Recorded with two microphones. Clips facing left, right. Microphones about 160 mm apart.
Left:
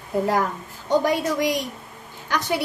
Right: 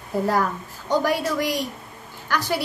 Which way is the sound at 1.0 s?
20° left (ahead or behind).